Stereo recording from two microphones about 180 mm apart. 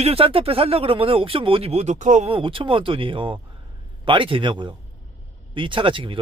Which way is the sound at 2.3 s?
30° right (ahead or behind).